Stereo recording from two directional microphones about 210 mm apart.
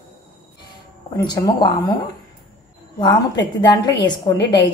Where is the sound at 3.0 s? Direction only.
20° left (ahead or behind).